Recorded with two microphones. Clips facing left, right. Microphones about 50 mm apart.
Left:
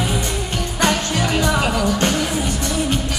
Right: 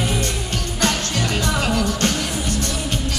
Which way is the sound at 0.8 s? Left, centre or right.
Centre.